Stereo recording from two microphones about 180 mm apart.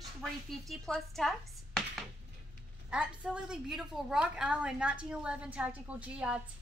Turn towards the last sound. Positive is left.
turn(degrees=-5)  # may be behind; listen again after turning